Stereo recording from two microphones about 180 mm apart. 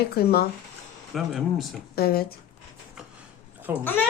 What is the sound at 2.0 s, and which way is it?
Speech, 55° left (ahead or behind).